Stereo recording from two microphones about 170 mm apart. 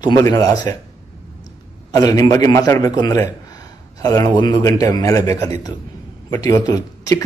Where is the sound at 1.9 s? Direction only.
20° left (ahead or behind).